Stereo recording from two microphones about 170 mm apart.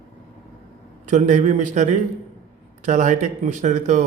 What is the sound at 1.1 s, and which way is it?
Speech, 45° right (ahead or behind).